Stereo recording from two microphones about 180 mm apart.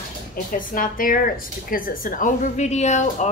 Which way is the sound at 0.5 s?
50° left (ahead or behind).